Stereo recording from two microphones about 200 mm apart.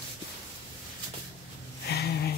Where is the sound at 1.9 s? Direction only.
55° left (ahead or behind).